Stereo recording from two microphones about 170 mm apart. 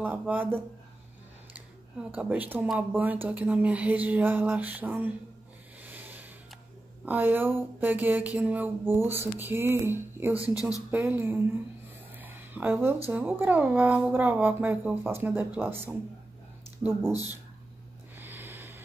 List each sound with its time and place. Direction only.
0.0 s speech: 10° right (ahead or behind)
2.0 s speech: 10° right (ahead or behind)
5.9 s a sound: 10° right (ahead or behind)
7.1 s speech: 10° right (ahead or behind)
18.1 s snort: 10° right (ahead or behind)